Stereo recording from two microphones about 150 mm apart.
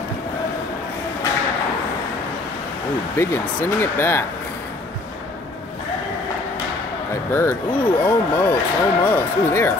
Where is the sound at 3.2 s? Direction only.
15° left (ahead or behind).